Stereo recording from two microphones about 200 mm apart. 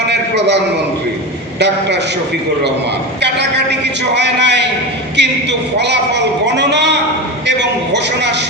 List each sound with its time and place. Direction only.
0.1 s a man's voice: 60° right (ahead or behind)
3.3 s a sound: 60° right (ahead or behind)
5.1 s a man's voice: 60° right (ahead or behind)